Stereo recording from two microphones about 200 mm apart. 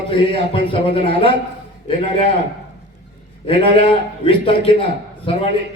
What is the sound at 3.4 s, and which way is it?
A man's voice, 25° left (ahead or behind).